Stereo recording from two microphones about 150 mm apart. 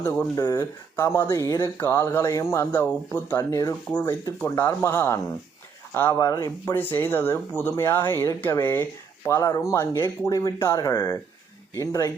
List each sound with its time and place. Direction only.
0.0 s speech: 20° left (ahead or behind)
6.1 s speech: 25° left (ahead or behind)